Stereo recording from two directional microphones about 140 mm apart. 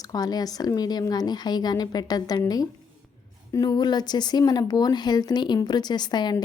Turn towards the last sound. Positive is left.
turn(degrees=30)  # may be behind; listen again after turning